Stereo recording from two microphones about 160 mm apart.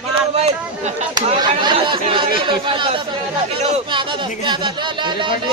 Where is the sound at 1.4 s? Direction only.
30° right (ahead or behind).